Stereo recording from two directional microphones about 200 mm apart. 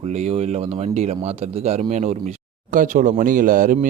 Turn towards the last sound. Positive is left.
turn(degrees=-40)  # may be behind; listen again after turning